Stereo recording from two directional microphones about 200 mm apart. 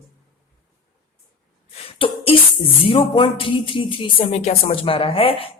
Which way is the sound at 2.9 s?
25° left (ahead or behind).